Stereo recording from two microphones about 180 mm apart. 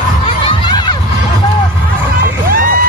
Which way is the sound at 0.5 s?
25° left (ahead or behind).